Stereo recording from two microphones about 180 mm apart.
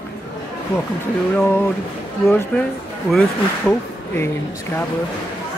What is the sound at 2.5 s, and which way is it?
Speech, 5° left (ahead or behind).